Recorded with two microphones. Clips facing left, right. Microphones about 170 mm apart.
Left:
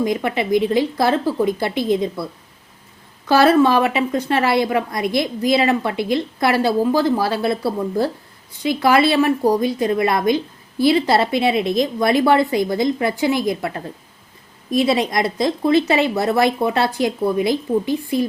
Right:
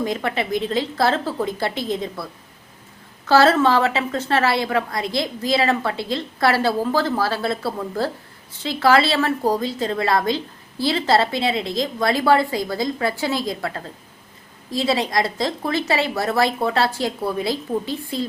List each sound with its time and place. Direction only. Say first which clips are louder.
0.0 s a woman's voice: left 3 dB; 15° left (ahead or behind)
3.2 s a woman's voice: left 2 dB; 15° left (ahead or behind)